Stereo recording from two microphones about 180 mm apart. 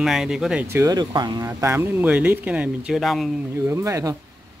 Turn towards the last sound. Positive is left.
turn(degrees=-15)  # may be behind; listen again after turning